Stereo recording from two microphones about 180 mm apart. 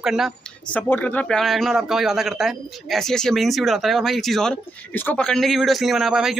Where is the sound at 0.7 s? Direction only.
10° left (ahead or behind).